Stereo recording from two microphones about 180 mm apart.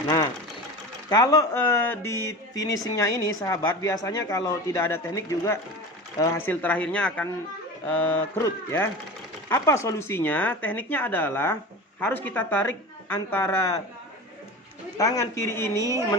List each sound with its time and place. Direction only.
1.1 s speech: 20° left (ahead or behind)
14.9 s speech: 20° left (ahead or behind)